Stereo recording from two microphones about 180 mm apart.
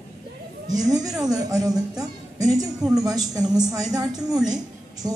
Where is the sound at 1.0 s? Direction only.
5° right (ahead or behind).